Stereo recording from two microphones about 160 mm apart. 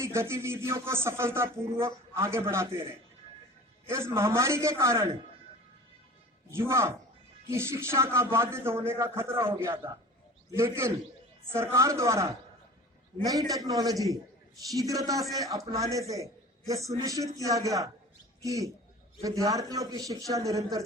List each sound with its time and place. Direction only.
0.0 s speech: 15° right (ahead or behind)
3.8 s speech: 15° right (ahead or behind)
6.5 s a man's voice: 15° right (ahead or behind)